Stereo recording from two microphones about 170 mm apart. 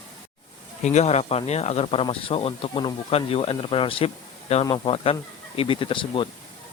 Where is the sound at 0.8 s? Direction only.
40° left (ahead or behind).